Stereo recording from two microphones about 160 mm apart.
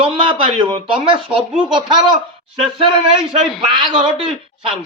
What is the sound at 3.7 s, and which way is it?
A man's voice, 30° right (ahead or behind).